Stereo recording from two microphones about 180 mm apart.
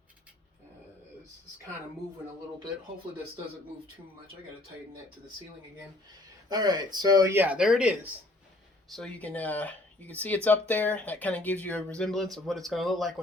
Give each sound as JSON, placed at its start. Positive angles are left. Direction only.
{"t": 6.5, "sound": "speech", "side_deg": -20}